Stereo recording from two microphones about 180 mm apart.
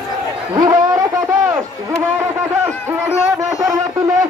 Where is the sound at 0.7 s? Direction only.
20° right (ahead or behind).